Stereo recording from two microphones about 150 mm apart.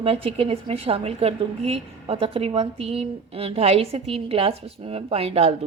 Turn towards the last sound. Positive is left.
turn(degrees=-40)  # may be behind; listen again after turning